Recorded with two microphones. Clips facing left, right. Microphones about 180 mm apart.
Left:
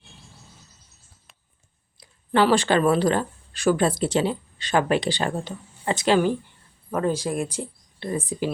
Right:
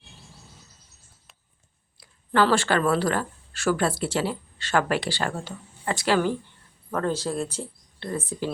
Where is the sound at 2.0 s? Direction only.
20° left (ahead or behind).